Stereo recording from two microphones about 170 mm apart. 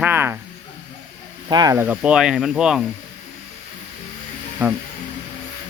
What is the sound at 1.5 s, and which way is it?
Speech, 25° right (ahead or behind).